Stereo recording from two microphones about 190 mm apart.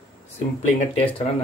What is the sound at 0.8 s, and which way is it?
Speech, 35° left (ahead or behind).